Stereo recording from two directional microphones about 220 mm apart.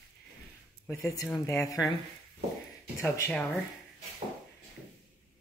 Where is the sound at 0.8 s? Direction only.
10° left (ahead or behind).